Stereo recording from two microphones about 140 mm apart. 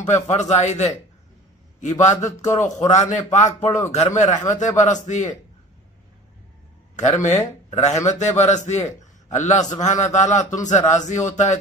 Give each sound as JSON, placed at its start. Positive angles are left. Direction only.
{"t": 0.0, "sound": "a man's voice", "side_deg": 55}
{"t": 7.0, "sound": "a man's voice", "side_deg": 60}